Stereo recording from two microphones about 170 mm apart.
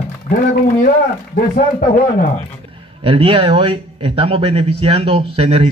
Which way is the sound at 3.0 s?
35° right (ahead or behind).